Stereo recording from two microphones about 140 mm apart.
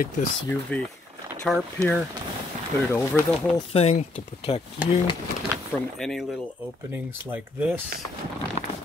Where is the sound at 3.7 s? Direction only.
50° left (ahead or behind).